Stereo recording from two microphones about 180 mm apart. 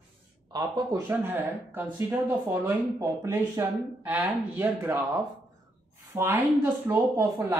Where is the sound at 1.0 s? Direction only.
10° right (ahead or behind).